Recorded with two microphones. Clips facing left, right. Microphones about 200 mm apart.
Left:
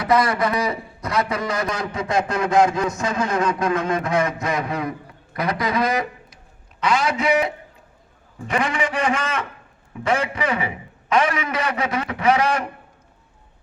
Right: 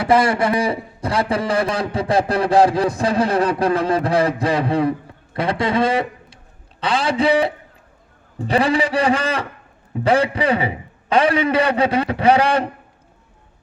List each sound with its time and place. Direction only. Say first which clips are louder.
0.0 s a man's voice: right 3 dB; 30° right (ahead or behind)